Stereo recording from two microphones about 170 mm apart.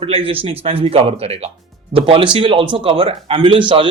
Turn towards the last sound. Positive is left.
turn(degrees=-30)  # may be behind; listen again after turning